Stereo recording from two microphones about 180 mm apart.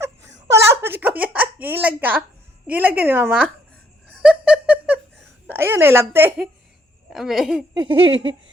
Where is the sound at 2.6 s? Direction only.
10° right (ahead or behind).